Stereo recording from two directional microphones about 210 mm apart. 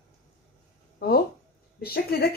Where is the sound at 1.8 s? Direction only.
50° left (ahead or behind).